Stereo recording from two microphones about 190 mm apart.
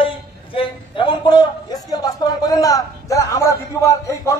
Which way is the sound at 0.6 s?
25° left (ahead or behind).